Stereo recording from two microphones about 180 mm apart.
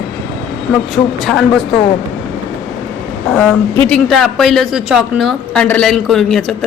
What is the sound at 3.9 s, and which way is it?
A woman's voice, centre (ahead or behind).